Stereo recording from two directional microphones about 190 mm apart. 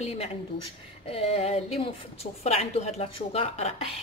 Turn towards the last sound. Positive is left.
turn(degrees=30)  # may be behind; listen again after turning